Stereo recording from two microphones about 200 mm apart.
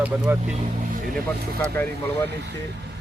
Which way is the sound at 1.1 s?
5° left (ahead or behind).